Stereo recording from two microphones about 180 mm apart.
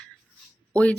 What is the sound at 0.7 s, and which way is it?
Speech, 5° left (ahead or behind).